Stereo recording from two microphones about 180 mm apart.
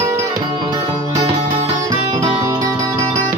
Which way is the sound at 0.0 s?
15° right (ahead or behind).